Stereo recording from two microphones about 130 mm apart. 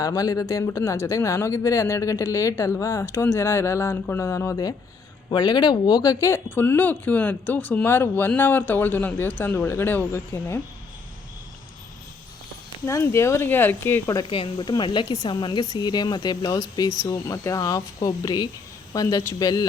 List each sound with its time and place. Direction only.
0.0 s speech: 30° left (ahead or behind)
5.3 s speech: 35° left (ahead or behind); by 10.6 s 20° left (ahead or behind)
12.8 s speech: 20° left (ahead or behind)
14.3 s speech: 40° left (ahead or behind)